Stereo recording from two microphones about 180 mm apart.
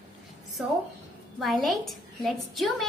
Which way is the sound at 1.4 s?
Centre (ahead or behind).